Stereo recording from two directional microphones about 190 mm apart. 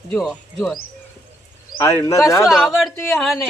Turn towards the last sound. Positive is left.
turn(degrees=0)  # may be behind; listen again after turning